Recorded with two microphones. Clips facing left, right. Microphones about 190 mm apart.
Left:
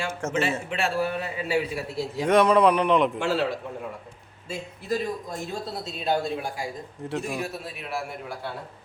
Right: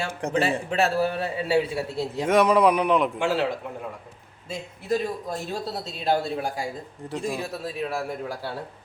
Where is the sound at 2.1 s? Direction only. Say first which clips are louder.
Even; 5° right (ahead or behind).